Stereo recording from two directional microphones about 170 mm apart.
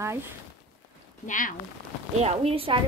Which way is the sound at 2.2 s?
40° right (ahead or behind).